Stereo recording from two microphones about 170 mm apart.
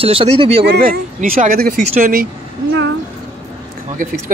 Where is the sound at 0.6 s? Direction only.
75° right (ahead or behind).